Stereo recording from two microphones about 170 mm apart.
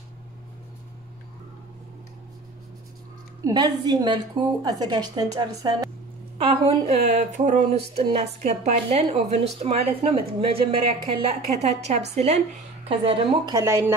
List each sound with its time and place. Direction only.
3.4 s a woman's voice: 25° right (ahead or behind)
6.3 s a woman's voice: 30° right (ahead or behind)
13.6 s speech: 15° right (ahead or behind)